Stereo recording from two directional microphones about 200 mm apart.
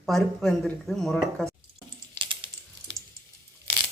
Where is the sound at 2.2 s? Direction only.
25° right (ahead or behind).